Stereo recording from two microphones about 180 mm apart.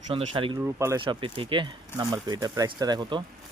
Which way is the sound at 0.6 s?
15° right (ahead or behind).